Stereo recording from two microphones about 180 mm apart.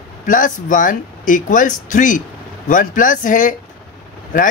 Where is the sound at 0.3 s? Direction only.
45° left (ahead or behind).